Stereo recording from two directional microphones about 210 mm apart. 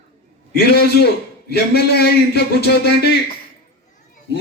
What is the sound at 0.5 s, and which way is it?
A man's voice, 50° left (ahead or behind).